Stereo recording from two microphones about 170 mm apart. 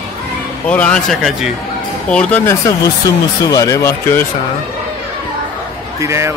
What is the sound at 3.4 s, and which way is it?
Speech, 20° left (ahead or behind).